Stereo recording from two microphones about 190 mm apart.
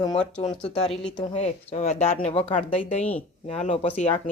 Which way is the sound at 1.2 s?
35° left (ahead or behind).